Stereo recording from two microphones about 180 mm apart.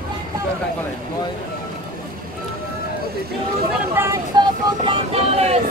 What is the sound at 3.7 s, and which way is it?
Speech, 15° right (ahead or behind).